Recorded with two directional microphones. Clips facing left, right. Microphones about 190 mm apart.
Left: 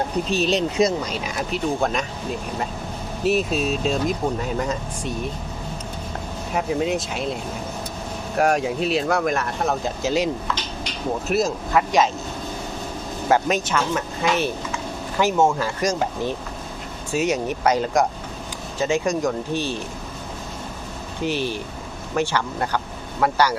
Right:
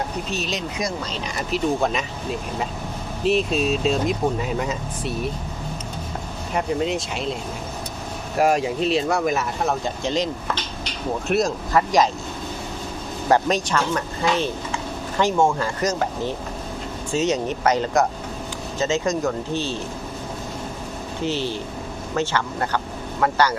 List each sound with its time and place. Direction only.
0.3 s speech: 30° left (ahead or behind)
1.1 s speech: 5° left (ahead or behind)
3.2 s speech: centre (ahead or behind)
6.5 s speech: centre (ahead or behind)
8.4 s speech: centre (ahead or behind)
11.3 s speech: centre (ahead or behind)
13.2 s speech: 5° left (ahead or behind)
14.3 s speech: 25° right (ahead or behind)
15.2 s speech: 5° left (ahead or behind)
21.2 s speech: 15° left (ahead or behind)